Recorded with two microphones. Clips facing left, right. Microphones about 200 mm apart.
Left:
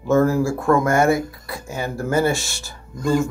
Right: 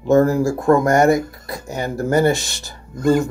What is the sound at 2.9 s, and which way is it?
Speech, 55° right (ahead or behind).